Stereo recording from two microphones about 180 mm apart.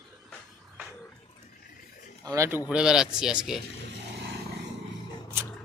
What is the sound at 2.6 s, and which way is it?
Speech, 5° right (ahead or behind).